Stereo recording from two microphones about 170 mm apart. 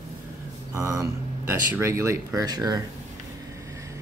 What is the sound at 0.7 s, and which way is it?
Speech, 20° right (ahead or behind).